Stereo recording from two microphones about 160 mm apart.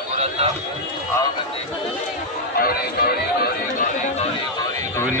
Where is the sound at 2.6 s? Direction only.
70° left (ahead or behind).